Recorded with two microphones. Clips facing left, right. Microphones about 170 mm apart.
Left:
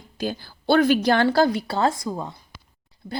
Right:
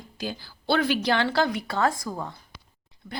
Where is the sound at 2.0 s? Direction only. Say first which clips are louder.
Left 4 dB; 20° left (ahead or behind).